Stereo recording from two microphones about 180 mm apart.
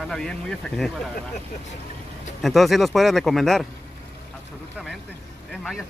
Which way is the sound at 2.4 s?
Centre (ahead or behind).